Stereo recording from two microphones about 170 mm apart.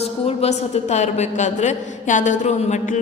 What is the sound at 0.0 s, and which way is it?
A woman's voice, 35° left (ahead or behind).